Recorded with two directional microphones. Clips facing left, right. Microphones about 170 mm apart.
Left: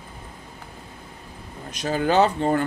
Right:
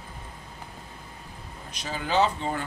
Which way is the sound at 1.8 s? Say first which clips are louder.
Left 6 dB; 50° left (ahead or behind).